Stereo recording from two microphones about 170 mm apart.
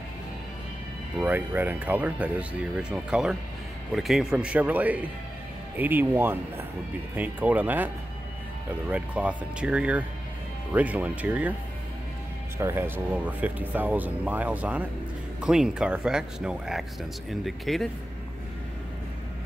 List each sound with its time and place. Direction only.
1.2 s speech: 10° right (ahead or behind)
8.9 s speech: 10° right (ahead or behind)
12.5 s speech: 15° right (ahead or behind)